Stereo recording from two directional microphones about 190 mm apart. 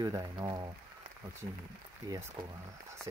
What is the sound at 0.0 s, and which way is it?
Speech, 25° right (ahead or behind).